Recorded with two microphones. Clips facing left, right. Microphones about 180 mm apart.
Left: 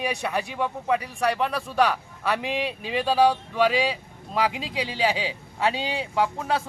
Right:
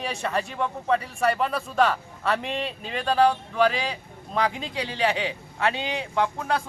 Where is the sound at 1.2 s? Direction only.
Centre (ahead or behind).